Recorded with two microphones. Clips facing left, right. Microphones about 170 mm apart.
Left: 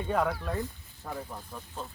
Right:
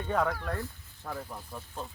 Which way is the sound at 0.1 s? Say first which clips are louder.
Even; 5° left (ahead or behind).